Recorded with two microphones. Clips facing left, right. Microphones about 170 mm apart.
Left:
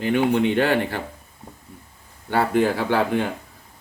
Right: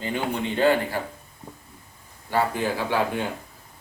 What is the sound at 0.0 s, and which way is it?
Speech, 70° left (ahead or behind).